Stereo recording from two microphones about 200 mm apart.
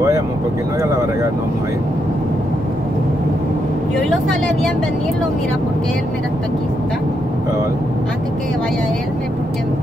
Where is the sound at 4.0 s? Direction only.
5° left (ahead or behind).